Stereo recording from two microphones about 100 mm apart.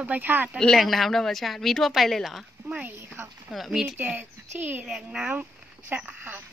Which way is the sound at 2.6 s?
15° right (ahead or behind).